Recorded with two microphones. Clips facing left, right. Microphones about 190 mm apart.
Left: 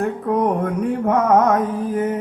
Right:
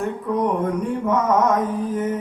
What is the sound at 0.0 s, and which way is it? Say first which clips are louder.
Music: left 3 dB; 65° left (ahead or behind).